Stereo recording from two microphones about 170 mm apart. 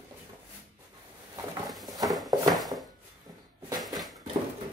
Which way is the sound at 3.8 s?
Centre (ahead or behind).